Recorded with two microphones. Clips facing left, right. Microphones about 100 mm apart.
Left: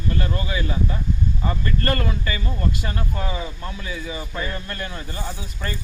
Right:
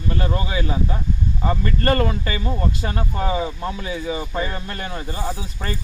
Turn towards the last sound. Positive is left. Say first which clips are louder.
# right 2 dB
turn(degrees=-30)  # may be behind; listen again after turning